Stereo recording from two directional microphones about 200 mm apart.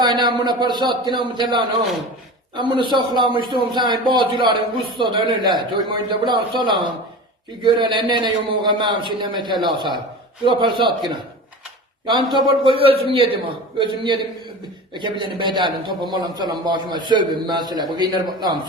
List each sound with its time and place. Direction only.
0.0 s a man's voice: 20° right (ahead or behind)
12.0 s a man's voice: 20° right (ahead or behind)